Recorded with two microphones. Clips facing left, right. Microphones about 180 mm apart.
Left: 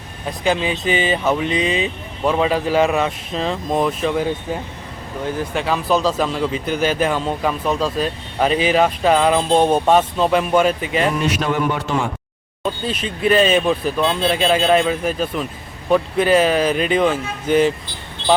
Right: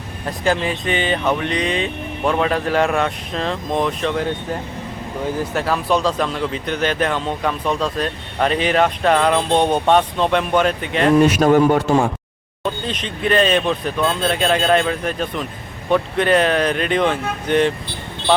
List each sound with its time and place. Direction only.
0.4 s a man's voice: 5° left (ahead or behind)
11.2 s a man's voice: 45° right (ahead or behind)
12.9 s a man's voice: 5° left (ahead or behind)